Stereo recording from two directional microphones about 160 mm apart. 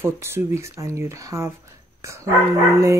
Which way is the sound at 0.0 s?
15° right (ahead or behind).